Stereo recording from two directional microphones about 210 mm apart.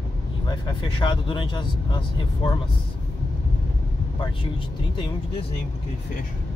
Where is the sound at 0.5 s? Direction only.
20° left (ahead or behind).